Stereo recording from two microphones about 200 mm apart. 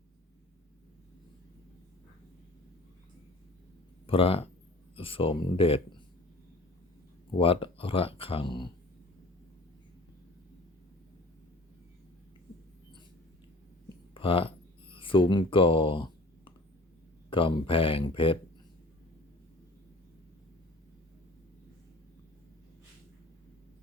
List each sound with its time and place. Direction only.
4.0 s speech: 30° left (ahead or behind)
7.3 s speech: 25° left (ahead or behind)
14.1 s a sound: 25° left (ahead or behind)
17.2 s speech: 25° left (ahead or behind)